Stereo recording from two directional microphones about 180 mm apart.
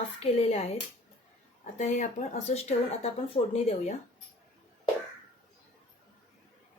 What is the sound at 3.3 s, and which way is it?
Speech, 35° left (ahead or behind).